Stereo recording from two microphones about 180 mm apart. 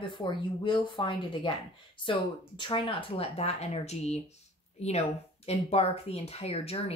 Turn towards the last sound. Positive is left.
turn(degrees=35)  # may be behind; listen again after turning